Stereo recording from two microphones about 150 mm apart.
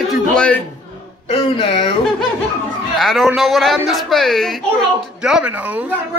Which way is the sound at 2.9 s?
Centre (ahead or behind).